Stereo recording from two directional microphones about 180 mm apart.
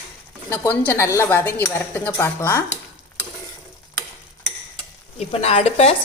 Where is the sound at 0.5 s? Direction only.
10° left (ahead or behind).